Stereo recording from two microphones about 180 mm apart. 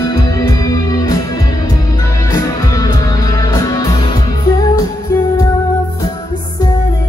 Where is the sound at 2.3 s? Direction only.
20° left (ahead or behind).